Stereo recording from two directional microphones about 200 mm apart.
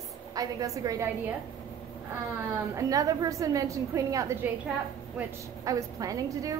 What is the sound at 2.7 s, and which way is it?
A woman's voice, 15° right (ahead or behind).